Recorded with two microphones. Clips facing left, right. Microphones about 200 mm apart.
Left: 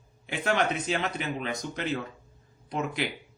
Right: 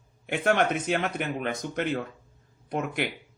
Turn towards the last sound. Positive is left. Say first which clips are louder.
# right 2 dB
turn(degrees=-55)  # may be behind; listen again after turning